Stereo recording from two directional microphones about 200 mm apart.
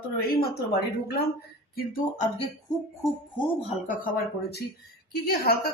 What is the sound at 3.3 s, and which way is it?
Speech, 30° left (ahead or behind).